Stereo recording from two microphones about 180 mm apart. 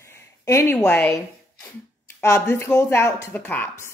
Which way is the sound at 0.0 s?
15° left (ahead or behind).